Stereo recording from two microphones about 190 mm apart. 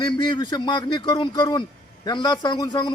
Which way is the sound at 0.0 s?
25° left (ahead or behind).